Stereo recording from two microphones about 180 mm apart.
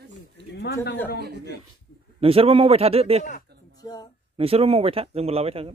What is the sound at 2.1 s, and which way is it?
Speech, 30° right (ahead or behind).